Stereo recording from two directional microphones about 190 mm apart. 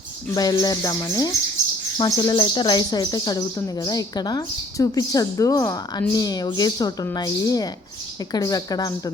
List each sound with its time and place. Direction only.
0.3 s speech: 20° left (ahead or behind)